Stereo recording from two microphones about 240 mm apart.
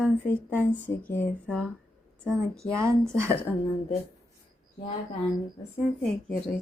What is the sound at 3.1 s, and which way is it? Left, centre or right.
Speech, centre.